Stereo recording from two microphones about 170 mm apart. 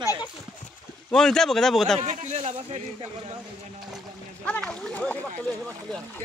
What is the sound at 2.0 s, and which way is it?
Speech, 45° right (ahead or behind).